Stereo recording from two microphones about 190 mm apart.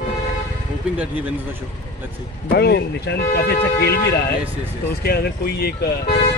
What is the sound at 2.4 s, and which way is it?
Speech, 60° left (ahead or behind).